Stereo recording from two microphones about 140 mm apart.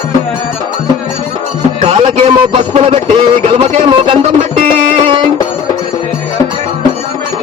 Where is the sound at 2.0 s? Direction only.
40° right (ahead or behind).